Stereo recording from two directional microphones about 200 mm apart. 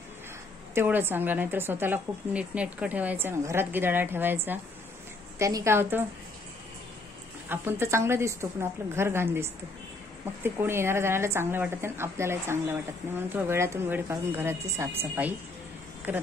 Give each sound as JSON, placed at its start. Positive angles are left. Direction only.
{"t": 0.7, "sound": "speech", "side_deg": -10}
{"t": 7.4, "sound": "speech", "side_deg": -10}
{"t": 16.1, "sound": "speech", "side_deg": -10}